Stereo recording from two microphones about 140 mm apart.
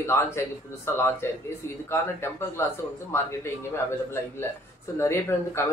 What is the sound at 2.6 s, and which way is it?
Speech, 20° left (ahead or behind).